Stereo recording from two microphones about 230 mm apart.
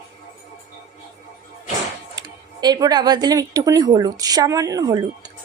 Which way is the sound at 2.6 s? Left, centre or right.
Centre.